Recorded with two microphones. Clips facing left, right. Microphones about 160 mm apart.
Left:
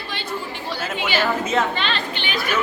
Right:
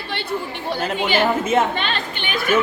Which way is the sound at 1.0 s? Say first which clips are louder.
Right 3 dB; 50° right (ahead or behind).